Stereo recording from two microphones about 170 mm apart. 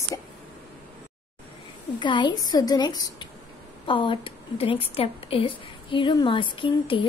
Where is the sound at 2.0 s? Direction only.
25° left (ahead or behind).